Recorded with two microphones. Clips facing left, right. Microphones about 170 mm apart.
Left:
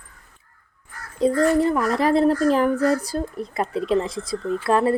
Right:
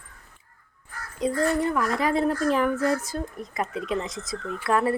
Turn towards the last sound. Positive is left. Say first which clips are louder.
# left 4 dB
turn(degrees=30)  # may be behind; listen again after turning